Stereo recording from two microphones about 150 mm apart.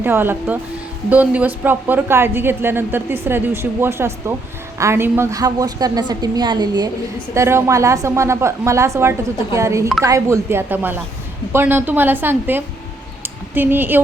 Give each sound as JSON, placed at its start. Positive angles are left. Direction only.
{"t": 0.0, "sound": "a woman's voice", "side_deg": -15}